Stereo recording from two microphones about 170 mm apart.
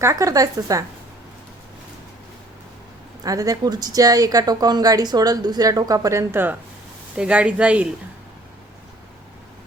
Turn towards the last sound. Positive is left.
turn(degrees=-5)  # may be behind; listen again after turning